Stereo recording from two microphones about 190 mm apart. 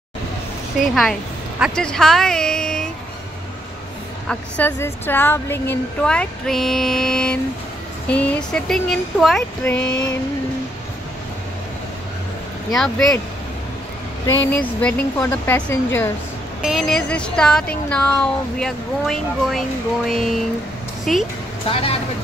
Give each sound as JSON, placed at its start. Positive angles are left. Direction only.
{"t": 1.6, "sound": "speech", "side_deg": 5}
{"t": 4.3, "sound": "speech", "side_deg": 10}
{"t": 12.7, "sound": "speech", "side_deg": 5}
{"t": 14.2, "sound": "speech", "side_deg": 10}
{"t": 16.6, "sound": "speech", "side_deg": 0}
{"t": 21.6, "sound": "speech", "side_deg": 30}